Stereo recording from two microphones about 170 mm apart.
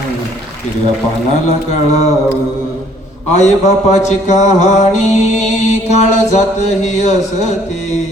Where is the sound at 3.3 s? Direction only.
45° left (ahead or behind).